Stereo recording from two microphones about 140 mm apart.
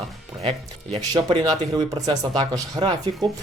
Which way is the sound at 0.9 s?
35° right (ahead or behind).